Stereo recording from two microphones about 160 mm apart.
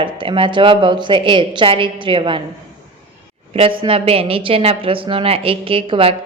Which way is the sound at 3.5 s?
35° right (ahead or behind).